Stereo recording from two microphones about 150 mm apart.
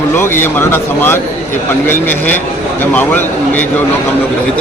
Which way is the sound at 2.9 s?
10° left (ahead or behind).